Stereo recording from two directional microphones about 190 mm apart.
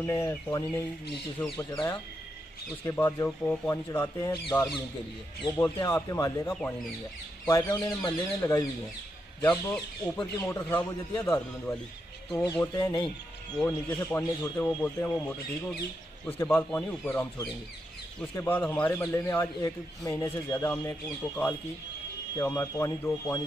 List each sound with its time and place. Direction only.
0.0 s speech: 15° left (ahead or behind)
2.8 s speech: 15° left (ahead or behind)
12.7 s speech: 25° left (ahead or behind)
13.6 s speech: 10° left (ahead or behind)